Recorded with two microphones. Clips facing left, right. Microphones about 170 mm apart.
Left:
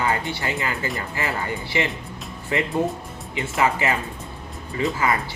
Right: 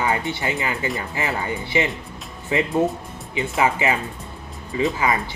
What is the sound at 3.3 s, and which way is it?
Speech, 20° right (ahead or behind).